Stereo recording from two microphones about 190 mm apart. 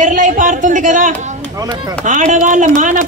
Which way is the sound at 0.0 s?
45° right (ahead or behind).